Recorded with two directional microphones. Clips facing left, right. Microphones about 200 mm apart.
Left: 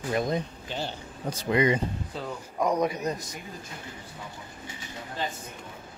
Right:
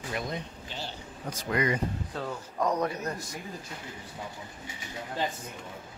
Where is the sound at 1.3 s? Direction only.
30° left (ahead or behind).